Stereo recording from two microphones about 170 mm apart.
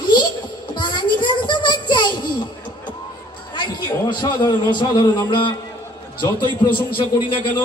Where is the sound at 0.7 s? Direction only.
25° left (ahead or behind).